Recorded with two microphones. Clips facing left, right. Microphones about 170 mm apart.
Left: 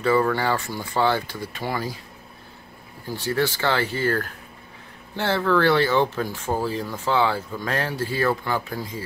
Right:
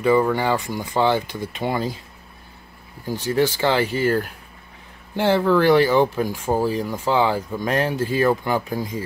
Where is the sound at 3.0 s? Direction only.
15° right (ahead or behind).